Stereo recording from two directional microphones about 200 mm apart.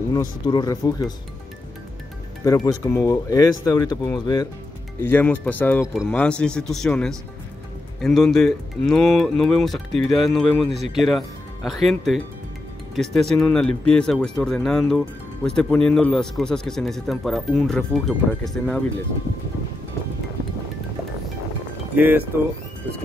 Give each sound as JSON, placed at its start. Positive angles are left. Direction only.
{"t": 0.1, "sound": "speech", "side_deg": 20}
{"t": 2.4, "sound": "speech", "side_deg": 15}
{"t": 5.0, "sound": "a man's voice", "side_deg": 10}
{"t": 21.9, "sound": "speech", "side_deg": -10}